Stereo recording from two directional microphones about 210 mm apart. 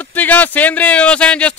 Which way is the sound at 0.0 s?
10° left (ahead or behind).